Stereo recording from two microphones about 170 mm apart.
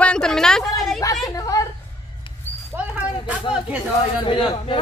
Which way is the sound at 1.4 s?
20° left (ahead or behind).